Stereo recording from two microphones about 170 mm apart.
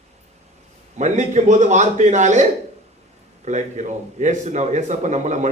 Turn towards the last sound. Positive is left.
turn(degrees=-45)  # may be behind; listen again after turning